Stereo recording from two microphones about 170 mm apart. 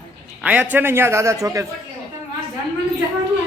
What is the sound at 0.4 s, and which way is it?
Speech, 10° right (ahead or behind).